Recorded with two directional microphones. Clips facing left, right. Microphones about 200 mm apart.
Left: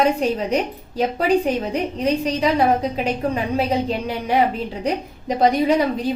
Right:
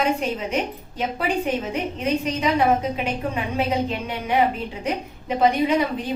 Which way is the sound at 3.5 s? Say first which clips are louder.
Left 3 dB; 35° left (ahead or behind).